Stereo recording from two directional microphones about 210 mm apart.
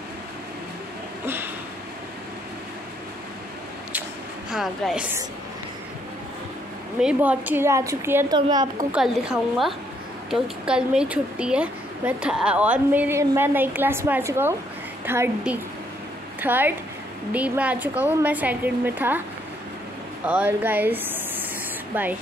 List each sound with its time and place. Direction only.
1.2 s a sound: 10° right (ahead or behind)
4.5 s speech: centre (ahead or behind)
7.0 s a woman's voice: 5° right (ahead or behind)
8.9 s a woman's voice: centre (ahead or behind)
20.2 s a woman's voice: 10° right (ahead or behind)